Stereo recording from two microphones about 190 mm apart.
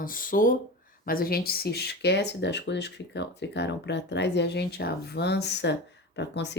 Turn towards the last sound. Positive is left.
turn(degrees=65)  # may be behind; listen again after turning